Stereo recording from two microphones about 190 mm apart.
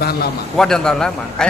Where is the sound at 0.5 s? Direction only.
5° left (ahead or behind).